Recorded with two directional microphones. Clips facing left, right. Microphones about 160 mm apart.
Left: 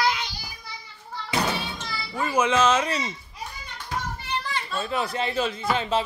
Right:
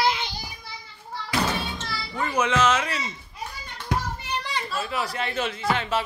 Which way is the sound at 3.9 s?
15° right (ahead or behind).